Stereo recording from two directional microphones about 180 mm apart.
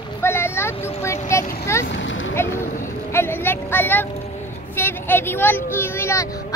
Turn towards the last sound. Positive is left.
turn(degrees=15)  # may be behind; listen again after turning